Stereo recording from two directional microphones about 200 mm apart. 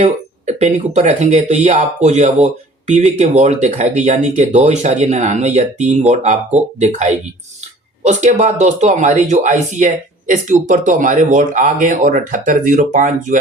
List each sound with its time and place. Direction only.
0.0 s speech: 35° right (ahead or behind)